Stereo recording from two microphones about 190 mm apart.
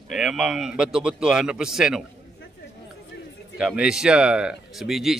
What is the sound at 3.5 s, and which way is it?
Speech, 5° right (ahead or behind).